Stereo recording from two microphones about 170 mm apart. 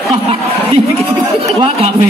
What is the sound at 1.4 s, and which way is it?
Speech, 35° right (ahead or behind).